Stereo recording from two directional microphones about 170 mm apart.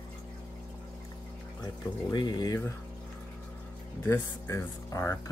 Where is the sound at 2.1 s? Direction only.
25° left (ahead or behind).